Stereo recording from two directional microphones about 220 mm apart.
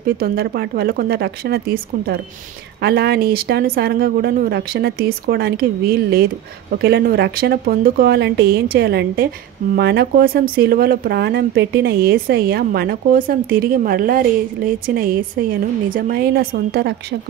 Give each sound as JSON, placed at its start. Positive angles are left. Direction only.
{"t": 0.0, "sound": "speech", "side_deg": -45}